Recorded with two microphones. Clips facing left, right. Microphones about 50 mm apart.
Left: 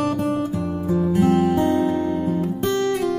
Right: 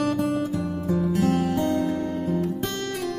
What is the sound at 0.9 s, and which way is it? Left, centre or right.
Music, centre.